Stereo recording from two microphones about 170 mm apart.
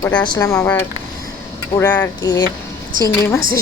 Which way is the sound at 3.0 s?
15° left (ahead or behind).